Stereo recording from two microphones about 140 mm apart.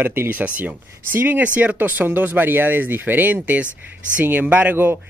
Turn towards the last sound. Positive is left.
turn(degrees=-15)  # may be behind; listen again after turning